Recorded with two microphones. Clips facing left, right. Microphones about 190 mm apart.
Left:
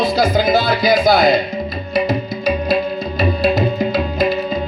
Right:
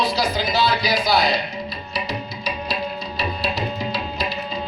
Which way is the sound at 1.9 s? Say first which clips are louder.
Left 13 dB; 50° left (ahead or behind).